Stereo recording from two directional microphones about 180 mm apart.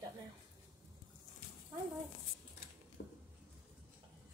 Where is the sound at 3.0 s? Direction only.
60° left (ahead or behind).